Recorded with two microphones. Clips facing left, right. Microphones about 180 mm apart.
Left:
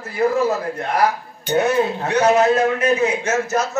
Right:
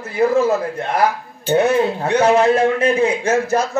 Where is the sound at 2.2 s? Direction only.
30° right (ahead or behind).